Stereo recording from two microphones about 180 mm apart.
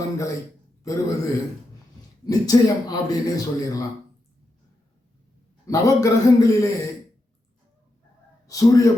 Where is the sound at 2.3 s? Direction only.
20° left (ahead or behind).